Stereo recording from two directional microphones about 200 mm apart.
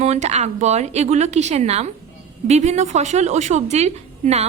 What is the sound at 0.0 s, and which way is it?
A woman's voice, 35° right (ahead or behind).